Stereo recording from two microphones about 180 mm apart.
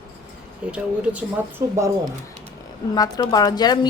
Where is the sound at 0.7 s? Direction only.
5° right (ahead or behind).